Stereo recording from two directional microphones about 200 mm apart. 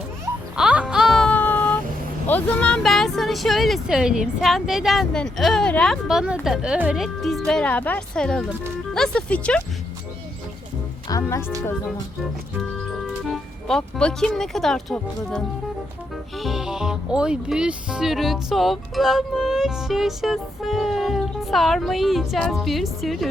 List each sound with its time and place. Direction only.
0.5 s music: 5° right (ahead or behind)
2.2 s speech: 10° left (ahead or behind)
11.2 s speech: 10° left (ahead or behind)
13.2 s speech: centre (ahead or behind)
16.4 s speech: centre (ahead or behind)